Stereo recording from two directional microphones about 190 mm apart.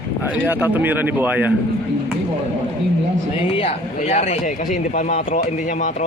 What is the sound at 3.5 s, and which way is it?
Speech, 30° left (ahead or behind).